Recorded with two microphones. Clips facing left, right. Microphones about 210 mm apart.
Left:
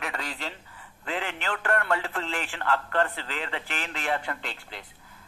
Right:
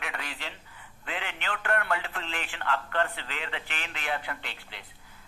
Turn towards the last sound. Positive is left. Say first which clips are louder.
# left 4 dB
turn(degrees=45)  # may be behind; listen again after turning